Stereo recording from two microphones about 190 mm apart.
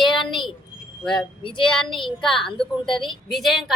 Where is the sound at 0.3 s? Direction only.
25° left (ahead or behind).